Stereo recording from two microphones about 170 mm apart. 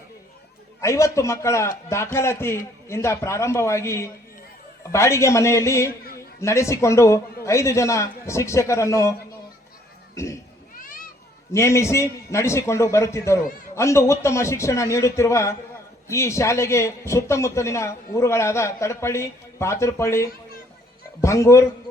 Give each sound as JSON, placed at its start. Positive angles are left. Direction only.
{"t": 0.8, "sound": "a man's voice", "side_deg": 15}
{"t": 10.8, "sound": "children playing", "side_deg": 55}
{"t": 11.5, "sound": "a man's voice", "side_deg": 15}